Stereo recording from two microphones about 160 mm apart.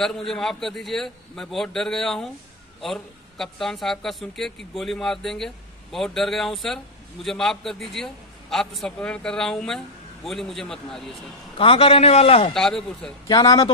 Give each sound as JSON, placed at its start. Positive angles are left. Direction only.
{"t": 0.0, "sound": "speech", "side_deg": 0}
{"t": 11.5, "sound": "a man's voice", "side_deg": 35}
{"t": 12.5, "sound": "speech", "side_deg": 5}
{"t": 13.3, "sound": "speech", "side_deg": 25}